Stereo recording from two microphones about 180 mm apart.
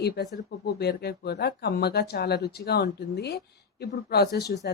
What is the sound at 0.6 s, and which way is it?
Speech, 65° left (ahead or behind).